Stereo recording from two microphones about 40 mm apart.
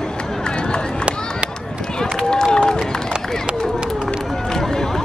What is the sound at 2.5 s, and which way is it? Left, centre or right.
Run, centre.